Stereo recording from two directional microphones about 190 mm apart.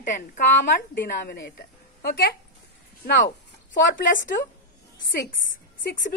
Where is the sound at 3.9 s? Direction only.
45° left (ahead or behind).